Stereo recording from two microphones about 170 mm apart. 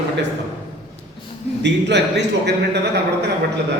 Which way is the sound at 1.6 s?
90° right.